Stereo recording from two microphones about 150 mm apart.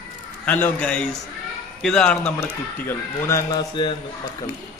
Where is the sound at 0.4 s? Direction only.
10° left (ahead or behind).